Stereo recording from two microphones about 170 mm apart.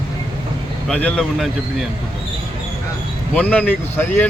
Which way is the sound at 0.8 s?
5° left (ahead or behind).